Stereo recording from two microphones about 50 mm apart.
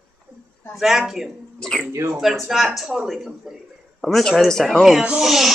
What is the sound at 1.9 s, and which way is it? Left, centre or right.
Speech, right.